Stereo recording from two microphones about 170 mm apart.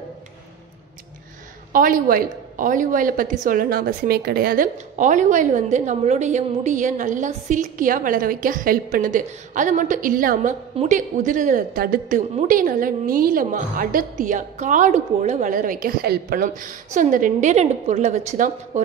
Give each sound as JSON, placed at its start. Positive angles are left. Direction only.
{"t": 1.7, "sound": "a woman's voice", "side_deg": -55}